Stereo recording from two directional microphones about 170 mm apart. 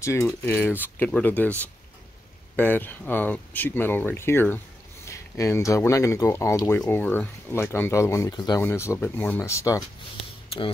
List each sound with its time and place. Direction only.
0.0 s speech: 15° left (ahead or behind)
2.5 s speech: 10° left (ahead or behind)
10.5 s speech: 35° left (ahead or behind)